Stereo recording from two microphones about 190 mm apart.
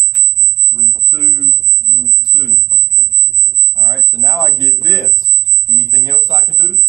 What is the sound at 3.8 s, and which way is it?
A man's voice, 15° left (ahead or behind).